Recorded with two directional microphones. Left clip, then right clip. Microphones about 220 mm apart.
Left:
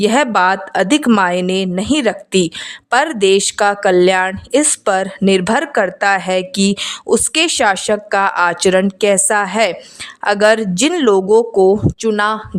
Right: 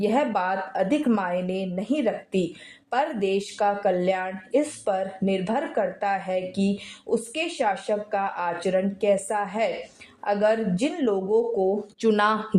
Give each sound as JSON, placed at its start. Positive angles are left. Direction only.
{"t": 0.0, "sound": "speech", "side_deg": 35}
{"t": 12.0, "sound": "speech", "side_deg": 20}